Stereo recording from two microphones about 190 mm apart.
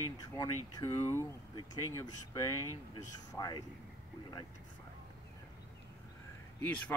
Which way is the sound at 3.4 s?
20° left (ahead or behind).